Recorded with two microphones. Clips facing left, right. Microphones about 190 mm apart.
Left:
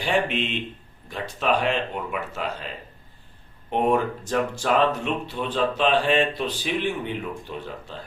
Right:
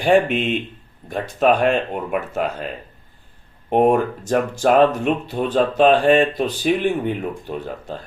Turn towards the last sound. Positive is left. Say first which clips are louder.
# right 6 dB
turn(degrees=-45)  # may be behind; listen again after turning